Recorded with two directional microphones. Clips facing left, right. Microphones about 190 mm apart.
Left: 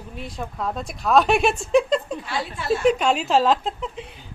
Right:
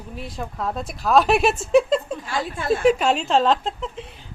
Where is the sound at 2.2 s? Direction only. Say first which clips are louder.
Right 2 dB; 45° right (ahead or behind).